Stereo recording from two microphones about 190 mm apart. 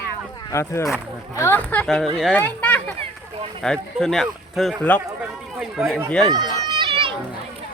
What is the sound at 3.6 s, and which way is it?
A man's voice, 5° left (ahead or behind).